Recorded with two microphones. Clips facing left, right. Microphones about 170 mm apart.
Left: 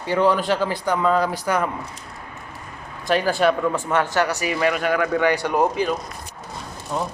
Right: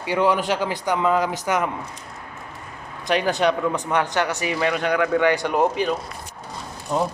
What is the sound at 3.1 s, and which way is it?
Speech, 20° right (ahead or behind).